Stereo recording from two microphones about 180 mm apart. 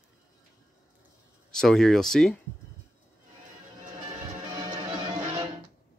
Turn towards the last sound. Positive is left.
turn(degrees=-30)  # may be behind; listen again after turning